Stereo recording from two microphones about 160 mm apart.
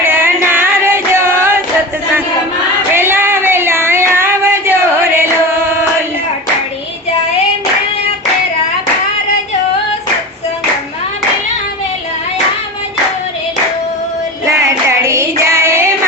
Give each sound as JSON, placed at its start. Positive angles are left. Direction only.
{"t": 0.0, "sound": "music", "side_deg": -15}
{"t": 2.9, "sound": "a sound", "side_deg": -15}
{"t": 14.6, "sound": "hands", "side_deg": -20}